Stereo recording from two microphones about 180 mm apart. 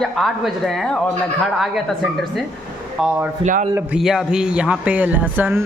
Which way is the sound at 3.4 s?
45° right (ahead or behind).